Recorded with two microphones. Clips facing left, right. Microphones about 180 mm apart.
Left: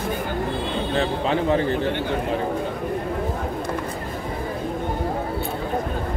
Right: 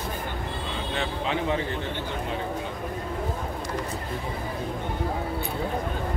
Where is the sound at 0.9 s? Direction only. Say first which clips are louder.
Left 6 dB; 35° left (ahead or behind).